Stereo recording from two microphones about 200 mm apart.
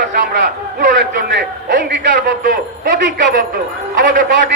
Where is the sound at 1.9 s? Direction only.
60° right (ahead or behind).